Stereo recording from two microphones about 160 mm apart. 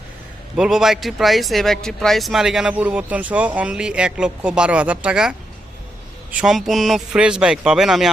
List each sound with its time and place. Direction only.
0.5 s a man's voice: 5° right (ahead or behind)
6.4 s a man's voice: centre (ahead or behind)